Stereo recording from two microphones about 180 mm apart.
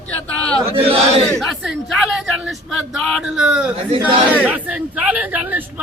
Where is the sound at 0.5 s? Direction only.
30° right (ahead or behind).